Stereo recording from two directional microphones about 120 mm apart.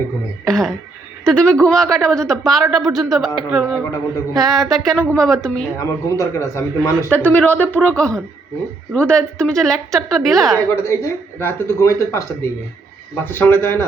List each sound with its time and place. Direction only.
0.4 s a man's voice: 5° left (ahead or behind)
5.7 s speech: 25° left (ahead or behind)
7.1 s a man's voice: 15° left (ahead or behind)
10.7 s speech: 20° left (ahead or behind)